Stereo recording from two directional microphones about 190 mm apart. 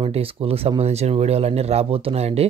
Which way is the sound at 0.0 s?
30° right (ahead or behind).